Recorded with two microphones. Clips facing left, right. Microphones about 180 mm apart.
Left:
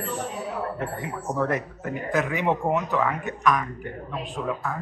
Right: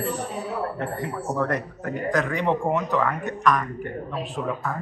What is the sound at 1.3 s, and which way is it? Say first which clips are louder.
A man's voice: left 1 dB; 5° left (ahead or behind).